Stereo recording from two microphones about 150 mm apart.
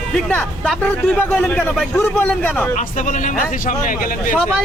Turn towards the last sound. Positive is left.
turn(degrees=65)  # may be behind; listen again after turning